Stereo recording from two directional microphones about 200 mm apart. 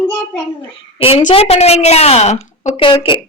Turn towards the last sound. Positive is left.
turn(degrees=25)  # may be behind; listen again after turning